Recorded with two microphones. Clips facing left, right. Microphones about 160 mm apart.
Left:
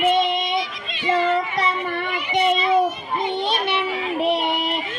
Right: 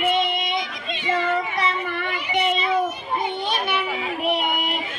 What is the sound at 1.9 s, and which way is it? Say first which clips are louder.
Child singing: left 2 dB; 30° left (ahead or behind).